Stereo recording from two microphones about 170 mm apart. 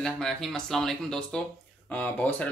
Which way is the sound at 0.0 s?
5° left (ahead or behind).